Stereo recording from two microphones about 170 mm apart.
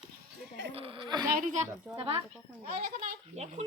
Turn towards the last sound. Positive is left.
turn(degrees=-40)  # may be behind; listen again after turning